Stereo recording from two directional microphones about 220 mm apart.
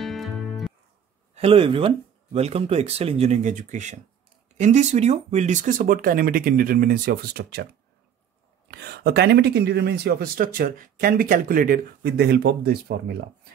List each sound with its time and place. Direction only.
0.0 s music: centre (ahead or behind)
1.3 s speech: 25° right (ahead or behind); by 7.6 s 45° right (ahead or behind)
8.6 s speech: 45° right (ahead or behind)